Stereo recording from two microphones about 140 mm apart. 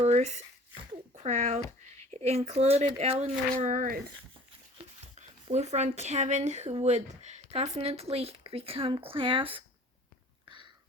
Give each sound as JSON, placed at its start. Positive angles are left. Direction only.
{"t": 0.0, "sound": "speech", "side_deg": -55}
{"t": 4.8, "sound": "speech", "side_deg": -50}